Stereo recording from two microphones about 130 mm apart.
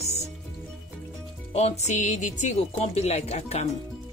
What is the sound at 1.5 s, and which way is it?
Speech, 50° left (ahead or behind).